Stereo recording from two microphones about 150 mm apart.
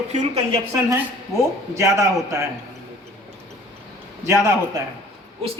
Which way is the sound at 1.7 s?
20° right (ahead or behind).